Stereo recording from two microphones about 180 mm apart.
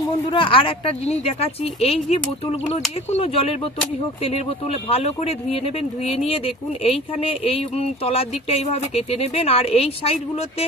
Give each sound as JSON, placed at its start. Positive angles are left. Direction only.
{"t": 0.3, "sound": "speech", "side_deg": 30}